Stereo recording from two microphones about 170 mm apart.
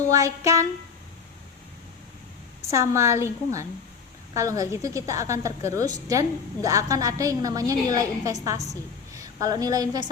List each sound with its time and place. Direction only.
0.1 s a woman's voice: 20° right (ahead or behind)
2.7 s a woman's voice: 15° right (ahead or behind)